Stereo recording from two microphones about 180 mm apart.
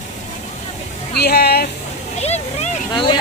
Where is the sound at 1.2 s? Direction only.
60° left (ahead or behind).